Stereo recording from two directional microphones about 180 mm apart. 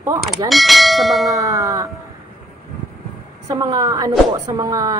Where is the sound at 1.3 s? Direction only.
20° right (ahead or behind).